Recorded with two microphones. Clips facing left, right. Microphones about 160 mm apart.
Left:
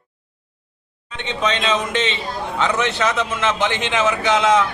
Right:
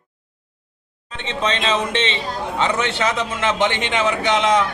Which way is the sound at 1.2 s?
30° right (ahead or behind).